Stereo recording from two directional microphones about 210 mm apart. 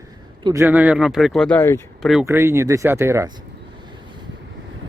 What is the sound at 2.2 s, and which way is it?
Speech, 10° right (ahead or behind).